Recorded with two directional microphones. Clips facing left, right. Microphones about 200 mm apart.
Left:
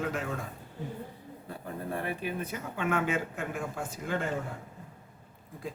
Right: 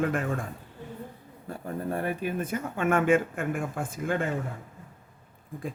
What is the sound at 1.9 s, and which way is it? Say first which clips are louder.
Speech: right 4 dB; 45° right (ahead or behind).